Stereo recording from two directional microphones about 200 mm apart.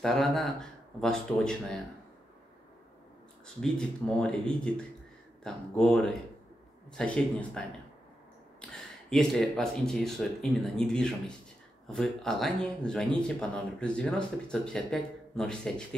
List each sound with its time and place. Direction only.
0.0 s speech: centre (ahead or behind)
3.6 s speech: 5° left (ahead or behind)
9.1 s speech: centre (ahead or behind)